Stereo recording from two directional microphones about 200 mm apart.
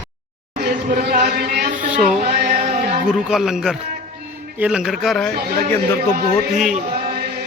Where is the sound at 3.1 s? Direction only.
Centre (ahead or behind).